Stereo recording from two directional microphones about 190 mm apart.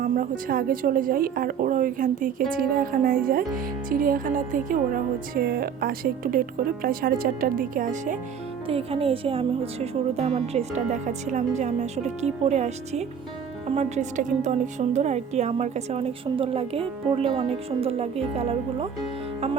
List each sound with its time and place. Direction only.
0.0 s speech: 50° right (ahead or behind)
8.6 s a woman's voice: 30° right (ahead or behind)